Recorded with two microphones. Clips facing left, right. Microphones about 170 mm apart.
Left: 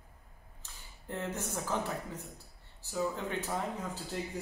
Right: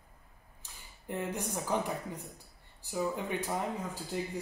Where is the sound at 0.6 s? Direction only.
15° right (ahead or behind).